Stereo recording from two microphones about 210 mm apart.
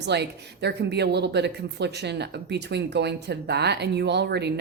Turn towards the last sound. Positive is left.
turn(degrees=-50)  # may be behind; listen again after turning